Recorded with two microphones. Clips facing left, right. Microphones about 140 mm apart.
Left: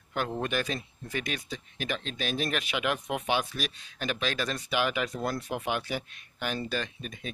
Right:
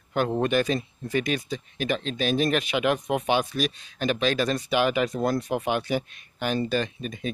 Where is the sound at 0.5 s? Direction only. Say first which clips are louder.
Right 8 dB; centre (ahead or behind).